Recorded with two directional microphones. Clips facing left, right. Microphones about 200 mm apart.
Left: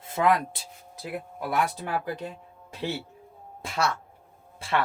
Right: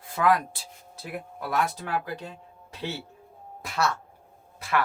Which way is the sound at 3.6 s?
25° left (ahead or behind).